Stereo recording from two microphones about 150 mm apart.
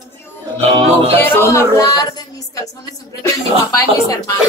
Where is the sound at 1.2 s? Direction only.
15° left (ahead or behind).